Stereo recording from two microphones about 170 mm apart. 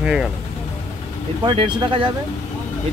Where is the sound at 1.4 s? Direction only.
30° right (ahead or behind).